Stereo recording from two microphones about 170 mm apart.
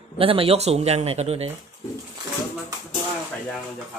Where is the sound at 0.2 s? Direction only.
30° right (ahead or behind).